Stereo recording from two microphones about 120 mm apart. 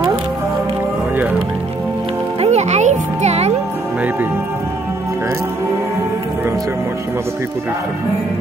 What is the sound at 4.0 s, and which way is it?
Music, 15° right (ahead or behind).